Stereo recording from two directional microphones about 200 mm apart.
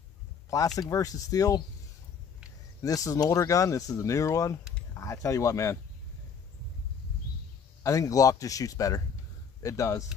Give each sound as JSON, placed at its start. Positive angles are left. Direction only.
{"t": 0.7, "sound": "speech", "side_deg": 15}
{"t": 2.8, "sound": "speech", "side_deg": 15}
{"t": 7.8, "sound": "speech", "side_deg": 15}